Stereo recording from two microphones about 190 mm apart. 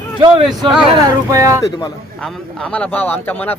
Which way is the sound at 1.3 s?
15° right (ahead or behind).